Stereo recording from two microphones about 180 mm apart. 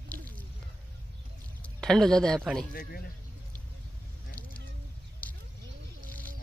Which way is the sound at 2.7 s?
55° left (ahead or behind).